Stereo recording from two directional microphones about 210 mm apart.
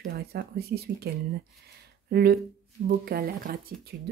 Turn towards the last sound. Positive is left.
turn(degrees=-45)  # may be behind; listen again after turning